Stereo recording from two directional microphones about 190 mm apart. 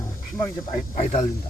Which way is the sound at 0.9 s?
40° left (ahead or behind).